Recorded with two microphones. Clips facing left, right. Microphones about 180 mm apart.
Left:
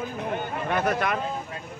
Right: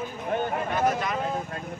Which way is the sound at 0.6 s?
65° left (ahead or behind).